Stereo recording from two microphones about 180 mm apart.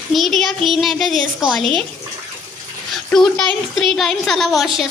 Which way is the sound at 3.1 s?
5° left (ahead or behind).